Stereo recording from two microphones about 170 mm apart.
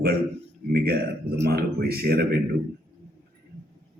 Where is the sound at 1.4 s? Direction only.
65° right (ahead or behind).